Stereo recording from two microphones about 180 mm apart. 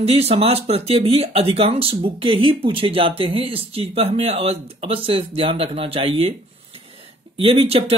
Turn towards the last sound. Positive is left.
turn(degrees=-35)  # may be behind; listen again after turning